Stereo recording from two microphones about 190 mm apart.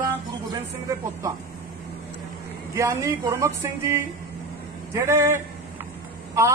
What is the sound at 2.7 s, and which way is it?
A woman's voice, 15° right (ahead or behind).